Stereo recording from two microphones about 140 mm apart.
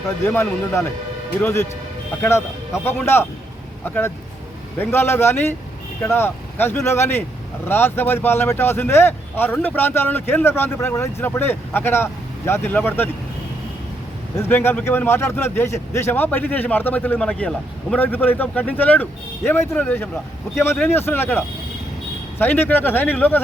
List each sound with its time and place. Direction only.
0.3 s speech: 15° left (ahead or behind)
2.8 s speech: 15° left (ahead or behind)
14.3 s speech: 15° left (ahead or behind)